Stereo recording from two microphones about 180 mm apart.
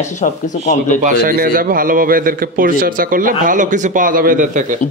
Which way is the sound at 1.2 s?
50° right (ahead or behind).